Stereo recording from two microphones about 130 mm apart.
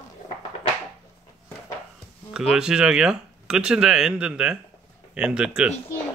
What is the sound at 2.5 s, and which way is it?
Speech, 5° right (ahead or behind).